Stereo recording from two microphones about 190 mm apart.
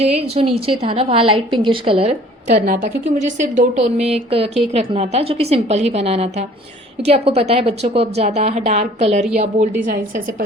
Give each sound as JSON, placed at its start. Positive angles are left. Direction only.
{"t": 0.0, "sound": "a woman's voice", "side_deg": -35}